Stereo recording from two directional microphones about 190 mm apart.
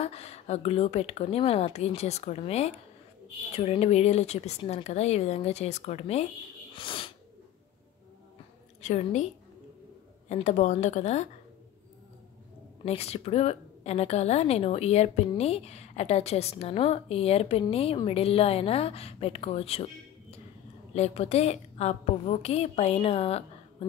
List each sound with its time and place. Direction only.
0.0 s a woman's voice: 35° left (ahead or behind)
6.7 s a sound: 25° left (ahead or behind)
8.8 s a woman's voice: 40° left (ahead or behind)
12.8 s a woman's voice: 35° left (ahead or behind)